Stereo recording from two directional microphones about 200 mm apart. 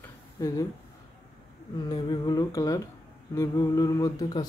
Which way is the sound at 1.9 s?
20° left (ahead or behind).